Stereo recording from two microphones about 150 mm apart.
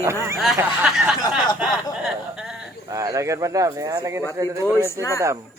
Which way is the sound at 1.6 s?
5° right (ahead or behind).